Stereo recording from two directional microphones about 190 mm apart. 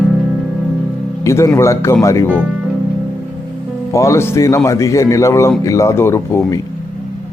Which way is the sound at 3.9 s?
15° left (ahead or behind).